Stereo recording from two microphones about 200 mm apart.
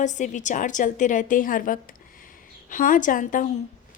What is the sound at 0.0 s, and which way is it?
A woman's voice, 35° left (ahead or behind).